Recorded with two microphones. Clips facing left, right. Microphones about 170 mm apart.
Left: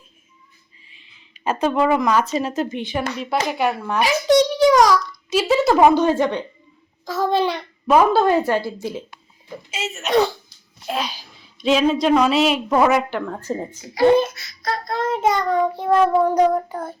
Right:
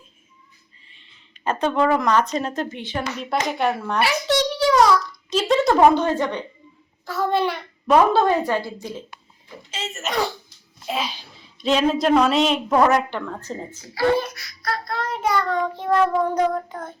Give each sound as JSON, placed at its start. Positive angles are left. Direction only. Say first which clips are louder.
{"t": 1.5, "sound": "a child's voice", "louder": "left 1 dB", "side_deg": 10}
{"t": 2.6, "sound": "a child's voice", "louder": "left 3 dB", "side_deg": 15}
{"t": 4.0, "sound": "a sound", "louder": "left 6 dB", "side_deg": 15}
{"t": 5.3, "sound": "a child's voice", "louder": "left 2 dB", "side_deg": 5}
{"t": 7.0, "sound": "a sound", "louder": "left 2 dB", "side_deg": 15}
{"t": 7.9, "sound": "a child's voice", "louder": "left 1 dB", "side_deg": 5}